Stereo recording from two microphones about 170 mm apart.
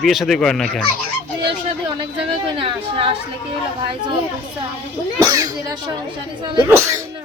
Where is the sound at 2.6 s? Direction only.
30° right (ahead or behind).